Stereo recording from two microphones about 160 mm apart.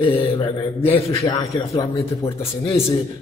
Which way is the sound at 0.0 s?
35° left (ahead or behind).